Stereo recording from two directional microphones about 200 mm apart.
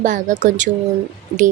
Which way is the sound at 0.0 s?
40° right (ahead or behind).